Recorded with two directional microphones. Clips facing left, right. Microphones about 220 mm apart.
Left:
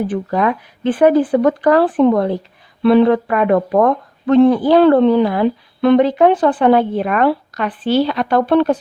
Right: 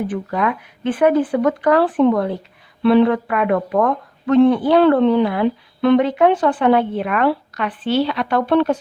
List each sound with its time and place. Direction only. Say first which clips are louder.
0.1 s speech: left 4 dB; 35° left (ahead or behind)